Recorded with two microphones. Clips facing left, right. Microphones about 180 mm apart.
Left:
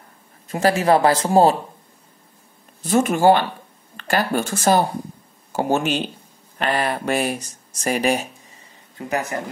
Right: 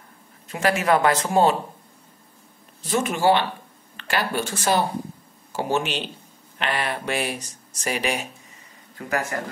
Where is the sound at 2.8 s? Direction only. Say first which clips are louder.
Left 5 dB; 50° left (ahead or behind).